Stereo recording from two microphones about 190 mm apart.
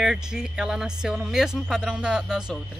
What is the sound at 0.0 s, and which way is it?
Speech, 5° right (ahead or behind).